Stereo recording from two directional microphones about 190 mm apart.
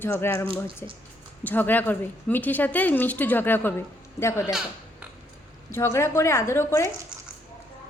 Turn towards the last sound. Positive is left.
turn(degrees=15)  # may be behind; listen again after turning